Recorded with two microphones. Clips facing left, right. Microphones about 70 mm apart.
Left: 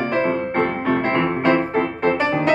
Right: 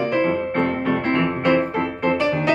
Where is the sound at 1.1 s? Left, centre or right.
Left.